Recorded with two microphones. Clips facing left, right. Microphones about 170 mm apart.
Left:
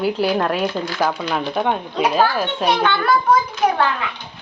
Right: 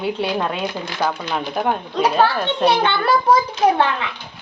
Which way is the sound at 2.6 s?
5° left (ahead or behind).